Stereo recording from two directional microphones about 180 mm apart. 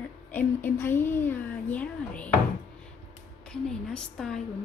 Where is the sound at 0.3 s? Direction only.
10° left (ahead or behind).